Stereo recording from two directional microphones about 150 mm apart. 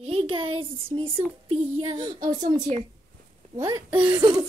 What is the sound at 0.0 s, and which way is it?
Speech, 40° right (ahead or behind).